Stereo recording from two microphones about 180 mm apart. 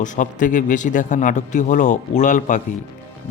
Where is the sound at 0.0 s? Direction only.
45° left (ahead or behind).